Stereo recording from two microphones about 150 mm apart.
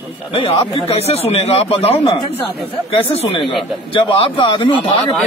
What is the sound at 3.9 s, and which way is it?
A man's voice, 35° left (ahead or behind).